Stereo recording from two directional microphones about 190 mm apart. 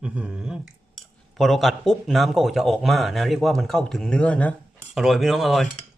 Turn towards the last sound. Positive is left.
turn(degrees=0)  # may be behind; listen again after turning